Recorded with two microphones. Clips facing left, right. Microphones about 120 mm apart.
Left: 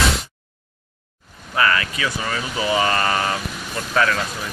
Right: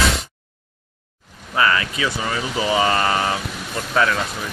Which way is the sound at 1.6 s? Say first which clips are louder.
Right 1 dB; 20° right (ahead or behind).